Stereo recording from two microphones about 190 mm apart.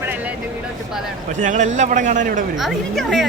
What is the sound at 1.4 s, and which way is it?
A man's voice, 40° right (ahead or behind).